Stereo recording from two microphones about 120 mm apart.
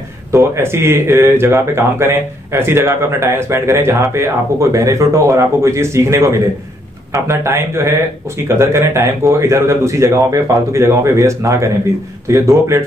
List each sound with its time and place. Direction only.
0.3 s speech: 25° right (ahead or behind)